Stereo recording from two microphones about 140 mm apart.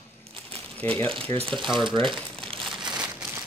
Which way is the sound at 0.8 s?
10° left (ahead or behind).